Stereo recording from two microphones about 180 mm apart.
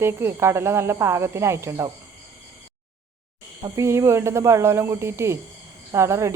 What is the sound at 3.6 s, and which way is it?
Speech, 15° right (ahead or behind).